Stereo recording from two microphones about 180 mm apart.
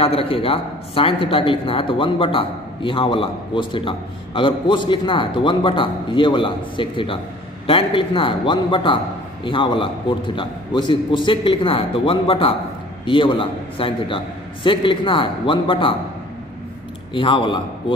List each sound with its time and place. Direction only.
0.0 s a woman's voice: 30° left (ahead or behind)
17.1 s a woman's voice: 30° left (ahead or behind)